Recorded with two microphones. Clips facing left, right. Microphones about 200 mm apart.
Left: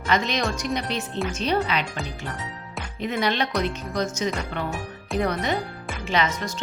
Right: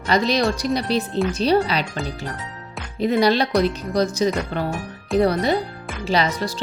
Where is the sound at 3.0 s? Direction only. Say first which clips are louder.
Right 7 dB; 35° right (ahead or behind).